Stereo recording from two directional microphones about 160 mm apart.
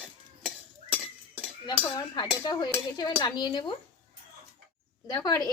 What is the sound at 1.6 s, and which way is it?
A woman's voice, 30° left (ahead or behind).